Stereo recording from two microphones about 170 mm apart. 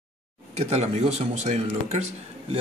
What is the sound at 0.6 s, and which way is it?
Speech, 40° right (ahead or behind).